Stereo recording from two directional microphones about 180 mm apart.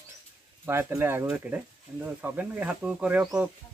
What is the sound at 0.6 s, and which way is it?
Speech, 15° right (ahead or behind).